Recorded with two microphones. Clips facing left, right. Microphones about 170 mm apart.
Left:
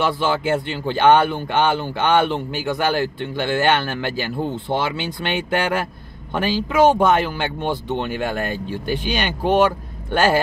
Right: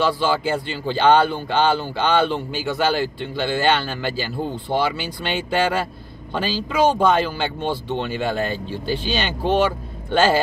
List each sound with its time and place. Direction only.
0.0 s speech: 20° left (ahead or behind)
6.3 s speech: 20° left (ahead or behind)